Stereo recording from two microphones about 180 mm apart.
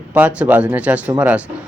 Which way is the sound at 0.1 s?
10° right (ahead or behind).